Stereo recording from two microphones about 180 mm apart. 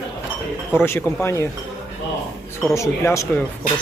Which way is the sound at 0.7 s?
15° left (ahead or behind).